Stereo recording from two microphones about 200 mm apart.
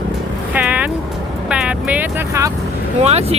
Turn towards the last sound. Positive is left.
turn(degrees=-30)  # may be behind; listen again after turning